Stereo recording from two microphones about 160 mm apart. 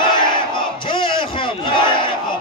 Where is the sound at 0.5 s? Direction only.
30° left (ahead or behind).